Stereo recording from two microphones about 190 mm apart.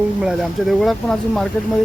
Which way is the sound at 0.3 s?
Centre (ahead or behind).